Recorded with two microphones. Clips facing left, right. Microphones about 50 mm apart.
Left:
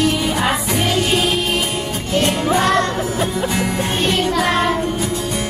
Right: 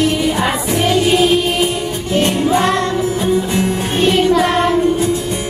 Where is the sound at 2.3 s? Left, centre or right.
Left.